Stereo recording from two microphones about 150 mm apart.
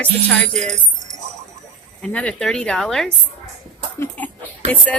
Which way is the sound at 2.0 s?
5° left (ahead or behind).